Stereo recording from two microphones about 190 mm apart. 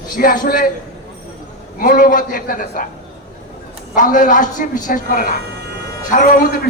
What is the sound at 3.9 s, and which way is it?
A man's voice, 40° left (ahead or behind).